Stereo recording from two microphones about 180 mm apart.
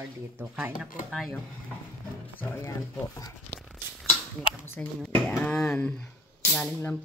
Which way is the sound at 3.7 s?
Centre (ahead or behind).